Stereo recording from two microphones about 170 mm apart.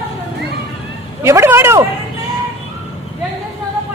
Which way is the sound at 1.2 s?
15° right (ahead or behind).